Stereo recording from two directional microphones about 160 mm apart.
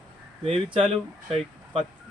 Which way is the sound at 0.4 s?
35° right (ahead or behind).